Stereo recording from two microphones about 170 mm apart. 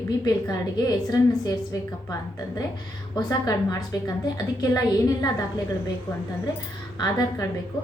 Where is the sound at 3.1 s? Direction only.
20° left (ahead or behind).